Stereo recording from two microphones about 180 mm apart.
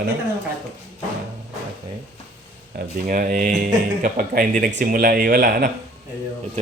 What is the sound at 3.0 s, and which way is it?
Speech, 50° right (ahead or behind).